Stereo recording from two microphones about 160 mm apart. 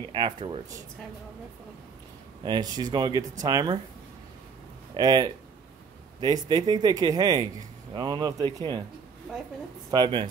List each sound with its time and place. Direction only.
0.1 s speech: 30° right (ahead or behind)
2.4 s speech: 25° right (ahead or behind)
4.9 s speech: 25° right (ahead or behind)
9.8 s speech: 25° right (ahead or behind)